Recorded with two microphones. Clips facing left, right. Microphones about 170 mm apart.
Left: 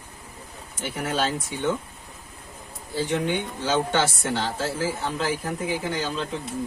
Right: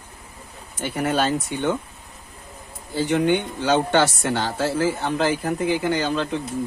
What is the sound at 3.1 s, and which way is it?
Speech, 60° right (ahead or behind).